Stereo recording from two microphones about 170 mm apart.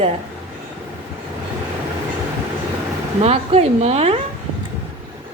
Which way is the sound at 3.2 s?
35° right (ahead or behind).